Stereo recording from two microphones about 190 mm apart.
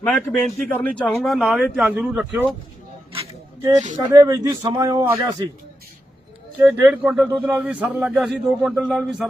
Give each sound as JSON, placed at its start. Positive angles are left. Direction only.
{"t": 0.0, "sound": "speech", "side_deg": 5}
{"t": 3.6, "sound": "speech", "side_deg": -20}
{"t": 6.7, "sound": "a man's voice", "side_deg": -10}